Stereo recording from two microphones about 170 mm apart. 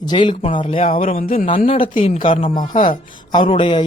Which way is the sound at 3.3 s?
25° left (ahead or behind).